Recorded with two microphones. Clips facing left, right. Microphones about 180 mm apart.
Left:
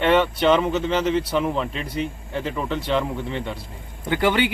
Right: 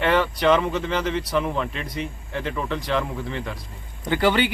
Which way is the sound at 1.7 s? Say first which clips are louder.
Left 3 dB; 30° left (ahead or behind).